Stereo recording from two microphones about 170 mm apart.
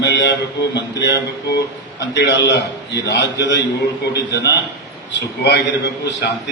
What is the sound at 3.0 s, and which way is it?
A man's voice, 90° left.